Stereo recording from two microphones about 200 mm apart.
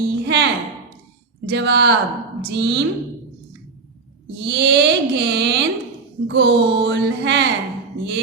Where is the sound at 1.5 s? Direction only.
55° right (ahead or behind).